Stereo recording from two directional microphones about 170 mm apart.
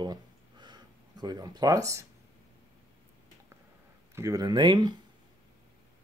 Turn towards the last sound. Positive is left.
turn(degrees=-25)  # may be behind; listen again after turning